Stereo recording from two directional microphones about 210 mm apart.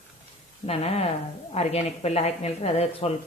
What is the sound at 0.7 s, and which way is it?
Speech, 30° left (ahead or behind).